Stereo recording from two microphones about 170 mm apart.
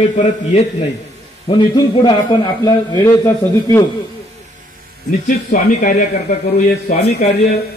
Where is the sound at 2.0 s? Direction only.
20° left (ahead or behind).